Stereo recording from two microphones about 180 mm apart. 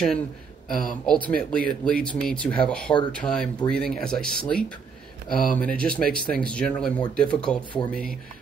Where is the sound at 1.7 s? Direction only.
5° left (ahead or behind).